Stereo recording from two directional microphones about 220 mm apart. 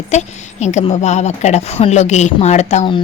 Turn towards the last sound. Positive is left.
turn(degrees=25)  # may be behind; listen again after turning